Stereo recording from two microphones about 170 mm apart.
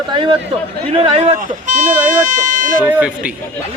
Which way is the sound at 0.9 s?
35° right (ahead or behind).